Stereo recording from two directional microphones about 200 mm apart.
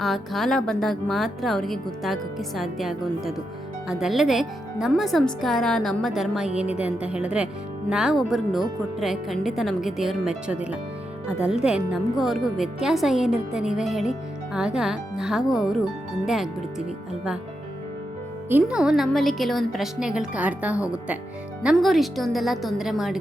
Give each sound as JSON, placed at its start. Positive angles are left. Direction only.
{"t": 0.0, "sound": "speech", "side_deg": 0}
{"t": 18.4, "sound": "speech", "side_deg": -5}